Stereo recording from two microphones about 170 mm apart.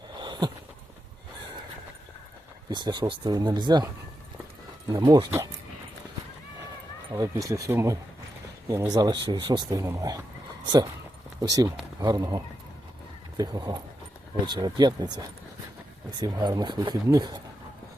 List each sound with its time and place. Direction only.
0.2 s a sound: 25° right (ahead or behind)
2.6 s speech: 25° right (ahead or behind)
4.9 s speech: 25° right (ahead or behind)
7.1 s speech: 20° right (ahead or behind)
11.3 s speech: 20° right (ahead or behind)